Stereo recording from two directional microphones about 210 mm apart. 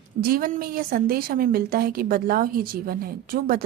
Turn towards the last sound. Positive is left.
turn(degrees=-45)  # may be behind; listen again after turning